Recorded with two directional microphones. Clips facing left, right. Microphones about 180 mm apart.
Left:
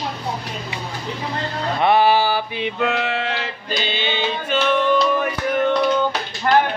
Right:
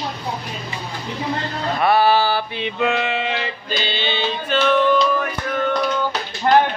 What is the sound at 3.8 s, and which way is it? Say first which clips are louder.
Music: even; 10° left (ahead or behind).